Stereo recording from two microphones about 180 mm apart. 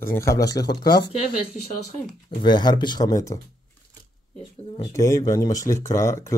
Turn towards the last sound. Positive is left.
turn(degrees=15)  # may be behind; listen again after turning